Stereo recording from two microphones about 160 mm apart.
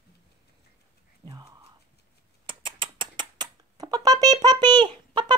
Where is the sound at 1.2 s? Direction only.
25° right (ahead or behind).